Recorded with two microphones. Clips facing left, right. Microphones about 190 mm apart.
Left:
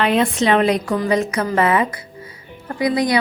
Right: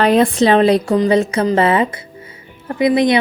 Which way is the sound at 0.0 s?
40° right (ahead or behind).